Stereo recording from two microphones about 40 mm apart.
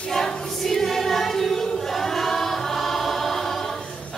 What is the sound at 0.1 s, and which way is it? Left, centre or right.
Choir, centre.